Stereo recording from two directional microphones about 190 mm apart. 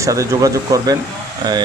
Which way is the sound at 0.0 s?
15° right (ahead or behind).